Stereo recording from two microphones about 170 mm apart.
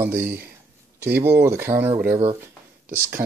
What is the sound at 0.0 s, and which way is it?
Speech, 15° right (ahead or behind).